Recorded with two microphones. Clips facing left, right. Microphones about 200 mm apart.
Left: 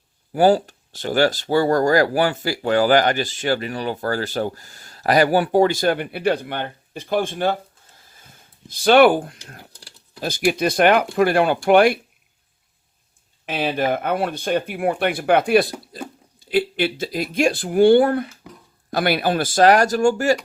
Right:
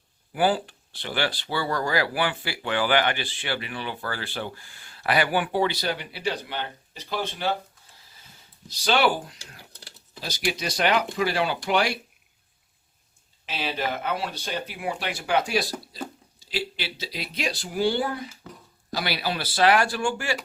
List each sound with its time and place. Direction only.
0.3 s speech: 40° left (ahead or behind)
8.0 s a sound: 50° left (ahead or behind)
10.2 s speech: 50° left (ahead or behind)
13.4 s speech: 55° left (ahead or behind)
15.9 s a sound: 50° left (ahead or behind)
16.4 s speech: 55° left (ahead or behind)